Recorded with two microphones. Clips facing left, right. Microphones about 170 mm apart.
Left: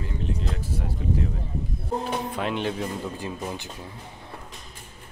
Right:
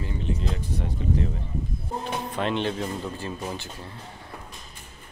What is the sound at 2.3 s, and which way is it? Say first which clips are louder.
Speech: right 1 dB; 5° left (ahead or behind).